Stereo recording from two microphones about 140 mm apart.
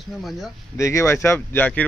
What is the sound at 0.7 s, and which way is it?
Speech, 20° left (ahead or behind).